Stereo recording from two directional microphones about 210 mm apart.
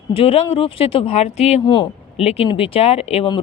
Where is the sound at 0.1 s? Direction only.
25° left (ahead or behind).